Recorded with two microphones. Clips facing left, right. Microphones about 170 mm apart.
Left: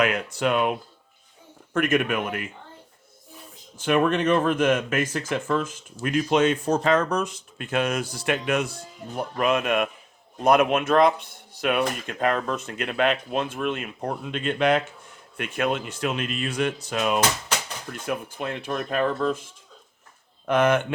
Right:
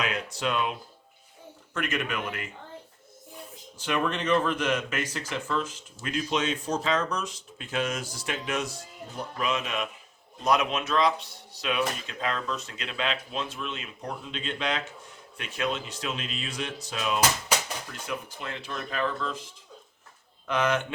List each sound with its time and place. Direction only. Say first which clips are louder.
0.0 s speech: left 7 dB; 55° left (ahead or behind)
3.8 s speech: left 7 dB; 55° left (ahead or behind)